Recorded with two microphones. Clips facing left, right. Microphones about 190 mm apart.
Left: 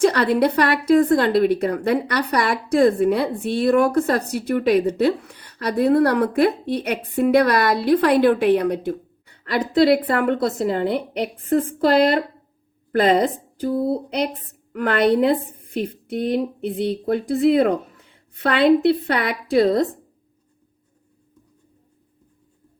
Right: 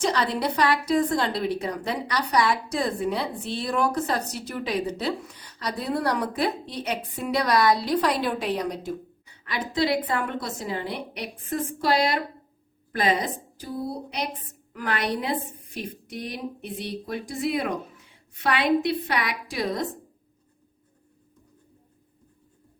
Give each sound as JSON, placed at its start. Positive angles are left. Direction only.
{"t": 0.0, "sound": "a woman's voice", "side_deg": 60}
{"t": 14.7, "sound": "a woman's voice", "side_deg": 60}